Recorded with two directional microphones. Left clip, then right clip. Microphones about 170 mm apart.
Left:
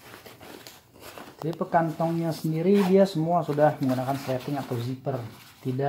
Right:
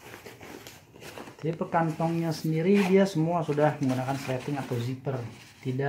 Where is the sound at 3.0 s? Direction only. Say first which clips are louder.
Left 3 dB; 30° left (ahead or behind).